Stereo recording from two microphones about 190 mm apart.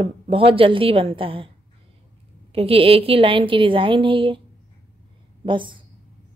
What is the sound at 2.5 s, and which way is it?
Speech, 30° right (ahead or behind).